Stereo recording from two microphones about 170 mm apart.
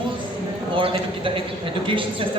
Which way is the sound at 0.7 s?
30° right (ahead or behind).